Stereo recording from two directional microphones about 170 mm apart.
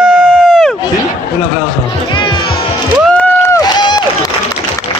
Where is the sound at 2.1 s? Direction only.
30° left (ahead or behind).